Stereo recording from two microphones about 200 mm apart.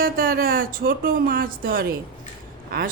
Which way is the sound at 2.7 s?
50° right (ahead or behind).